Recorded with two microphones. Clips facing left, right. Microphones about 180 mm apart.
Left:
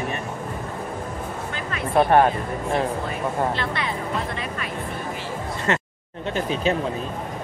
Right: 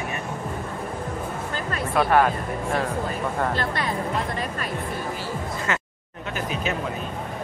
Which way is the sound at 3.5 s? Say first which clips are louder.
Right 1 dB; 45° right (ahead or behind).